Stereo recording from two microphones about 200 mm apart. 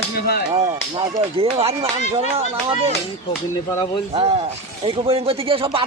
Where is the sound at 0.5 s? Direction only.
20° right (ahead or behind).